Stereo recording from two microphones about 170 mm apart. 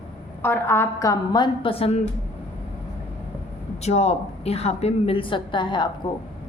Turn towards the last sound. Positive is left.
turn(degrees=25)  # may be behind; listen again after turning